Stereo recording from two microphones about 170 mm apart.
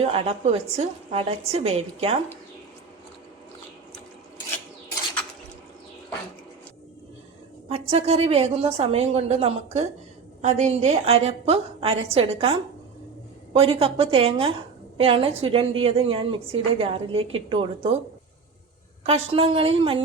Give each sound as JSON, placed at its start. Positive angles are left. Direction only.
{"t": 0.0, "sound": "a woman's voice", "side_deg": -35}
{"t": 7.7, "sound": "a woman's voice", "side_deg": -35}
{"t": 19.0, "sound": "a woman's voice", "side_deg": -35}